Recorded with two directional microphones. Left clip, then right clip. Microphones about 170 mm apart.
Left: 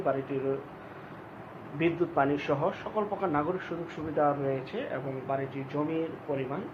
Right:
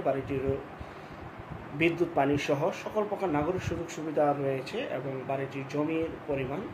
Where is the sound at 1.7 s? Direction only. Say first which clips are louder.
Right 1 dB; 20° right (ahead or behind).